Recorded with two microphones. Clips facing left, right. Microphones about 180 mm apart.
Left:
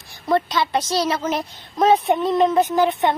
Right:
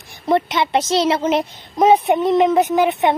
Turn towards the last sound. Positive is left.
turn(degrees=-20)  # may be behind; listen again after turning